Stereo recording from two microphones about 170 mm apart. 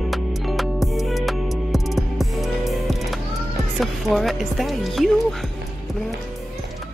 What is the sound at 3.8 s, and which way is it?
Speech, centre (ahead or behind).